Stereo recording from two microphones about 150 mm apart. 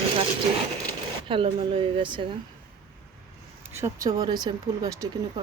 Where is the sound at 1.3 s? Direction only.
35° right (ahead or behind).